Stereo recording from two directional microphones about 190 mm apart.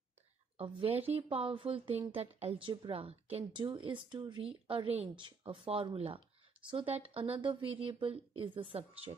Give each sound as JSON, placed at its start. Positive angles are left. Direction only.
{"t": 0.6, "sound": "speech", "side_deg": -30}